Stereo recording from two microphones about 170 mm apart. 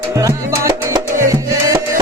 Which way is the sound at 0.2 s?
20° right (ahead or behind).